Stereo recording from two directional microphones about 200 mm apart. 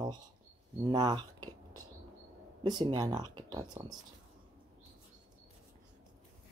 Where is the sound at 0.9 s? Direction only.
20° right (ahead or behind).